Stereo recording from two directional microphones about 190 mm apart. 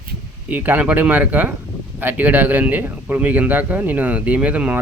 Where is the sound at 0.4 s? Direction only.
10° right (ahead or behind).